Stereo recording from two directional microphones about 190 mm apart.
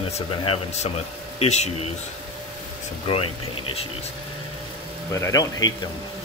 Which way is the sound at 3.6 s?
30° left (ahead or behind).